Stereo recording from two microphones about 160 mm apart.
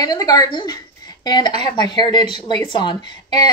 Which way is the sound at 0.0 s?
25° left (ahead or behind).